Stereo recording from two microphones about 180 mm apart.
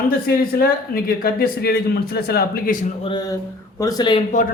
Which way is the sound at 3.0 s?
25° left (ahead or behind).